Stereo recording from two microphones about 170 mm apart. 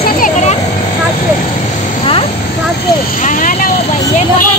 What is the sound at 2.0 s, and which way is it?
Vehicle, 35° left (ahead or behind).